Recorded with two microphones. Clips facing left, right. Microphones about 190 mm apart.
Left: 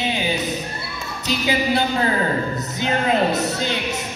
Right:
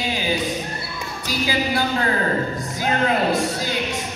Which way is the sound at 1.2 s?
25° left (ahead or behind).